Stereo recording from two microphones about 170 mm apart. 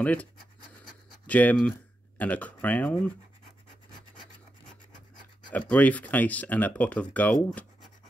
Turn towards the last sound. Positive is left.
turn(degrees=5)  # may be behind; listen again after turning